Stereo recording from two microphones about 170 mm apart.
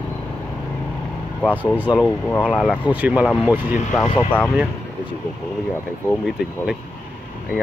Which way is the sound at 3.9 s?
5° left (ahead or behind).